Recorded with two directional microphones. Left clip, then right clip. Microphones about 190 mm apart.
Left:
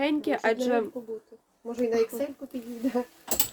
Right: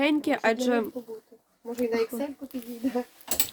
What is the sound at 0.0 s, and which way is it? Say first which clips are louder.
Speech: right 2 dB; 35° right (ahead or behind).